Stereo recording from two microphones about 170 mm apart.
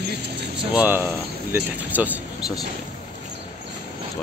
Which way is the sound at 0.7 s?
10° right (ahead or behind).